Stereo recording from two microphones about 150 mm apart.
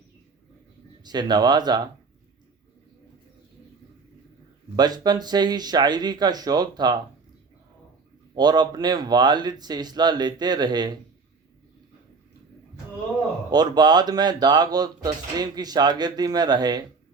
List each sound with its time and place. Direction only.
1.0 s speech: 30° right (ahead or behind)
4.8 s speech: 25° right (ahead or behind)
8.4 s speech: 25° right (ahead or behind)
13.5 s speech: 25° right (ahead or behind)